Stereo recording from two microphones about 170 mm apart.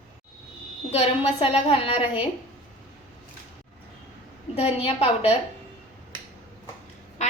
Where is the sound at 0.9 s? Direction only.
35° left (ahead or behind).